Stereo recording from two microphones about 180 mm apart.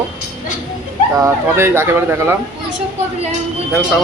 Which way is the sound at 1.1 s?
15° right (ahead or behind).